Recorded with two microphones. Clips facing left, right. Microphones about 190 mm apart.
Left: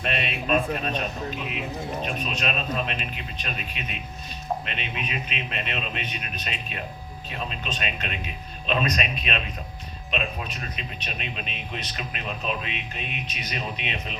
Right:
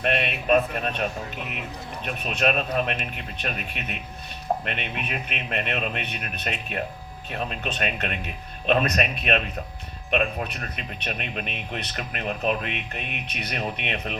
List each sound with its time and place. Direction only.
0.0 s speech: 55° right (ahead or behind)
2.0 s speech: 55° right (ahead or behind)